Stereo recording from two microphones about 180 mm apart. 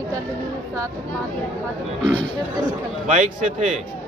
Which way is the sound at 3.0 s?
40° right (ahead or behind).